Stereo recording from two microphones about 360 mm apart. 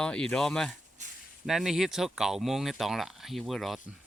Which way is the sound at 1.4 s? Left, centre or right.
Centre.